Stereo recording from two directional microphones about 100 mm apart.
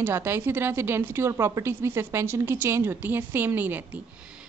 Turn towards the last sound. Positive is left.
turn(degrees=-20)  # may be behind; listen again after turning